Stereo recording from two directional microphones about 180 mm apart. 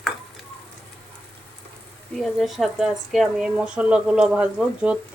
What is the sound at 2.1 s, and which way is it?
Speech, centre (ahead or behind).